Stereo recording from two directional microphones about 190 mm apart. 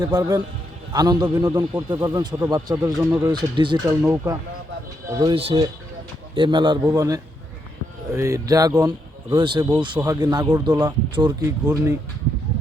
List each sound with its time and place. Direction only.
0.0 s speech: 20° right (ahead or behind)
5.2 s speech: 30° right (ahead or behind)